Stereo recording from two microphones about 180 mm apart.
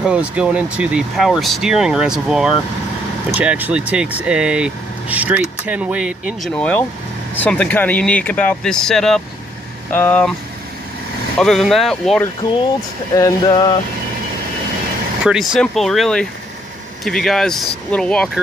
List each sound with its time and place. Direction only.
0.0 s speech: 5° right (ahead or behind)
6.5 s speech: 10° left (ahead or behind)
11.3 s speech: centre (ahead or behind)
13.1 s a sound: 20° left (ahead or behind)
15.2 s speech: centre (ahead or behind)